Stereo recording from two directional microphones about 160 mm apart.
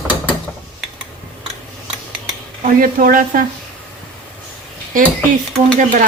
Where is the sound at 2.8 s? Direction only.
60° right (ahead or behind).